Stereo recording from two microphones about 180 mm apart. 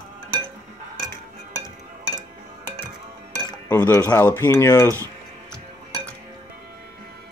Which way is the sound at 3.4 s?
15° left (ahead or behind).